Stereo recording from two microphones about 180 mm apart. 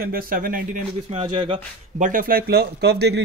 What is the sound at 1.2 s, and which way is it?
Speech, 30° right (ahead or behind).